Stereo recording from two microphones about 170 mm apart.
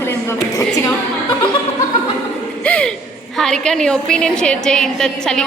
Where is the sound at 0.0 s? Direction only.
15° left (ahead or behind).